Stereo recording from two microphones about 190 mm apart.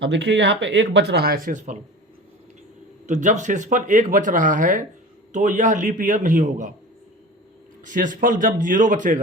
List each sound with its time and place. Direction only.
0.0 s speech: 65° right (ahead or behind); by 1.8 s 40° right (ahead or behind)
3.1 s speech: 40° right (ahead or behind)
7.9 s a man's voice: 45° right (ahead or behind)